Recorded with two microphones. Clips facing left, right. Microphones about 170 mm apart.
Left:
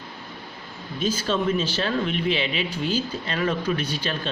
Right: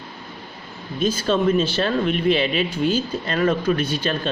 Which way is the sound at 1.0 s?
55° right (ahead or behind).